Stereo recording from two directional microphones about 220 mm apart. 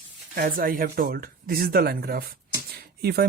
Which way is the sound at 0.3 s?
40° right (ahead or behind).